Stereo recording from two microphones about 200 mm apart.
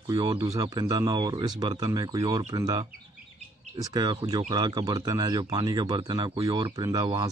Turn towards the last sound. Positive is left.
turn(degrees=-20)  # may be behind; listen again after turning